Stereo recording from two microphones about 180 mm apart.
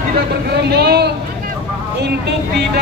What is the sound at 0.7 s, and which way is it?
Speech, 65° right (ahead or behind).